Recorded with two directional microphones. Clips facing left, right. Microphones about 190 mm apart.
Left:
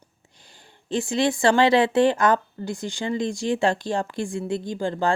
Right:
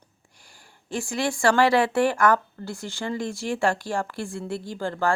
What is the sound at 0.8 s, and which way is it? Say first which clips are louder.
Speech: left 5 dB; 20° left (ahead or behind).